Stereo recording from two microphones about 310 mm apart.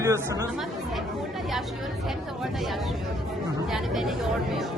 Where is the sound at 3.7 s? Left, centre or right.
Centre.